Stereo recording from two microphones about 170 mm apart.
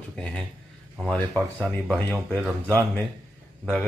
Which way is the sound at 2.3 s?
10° left (ahead or behind).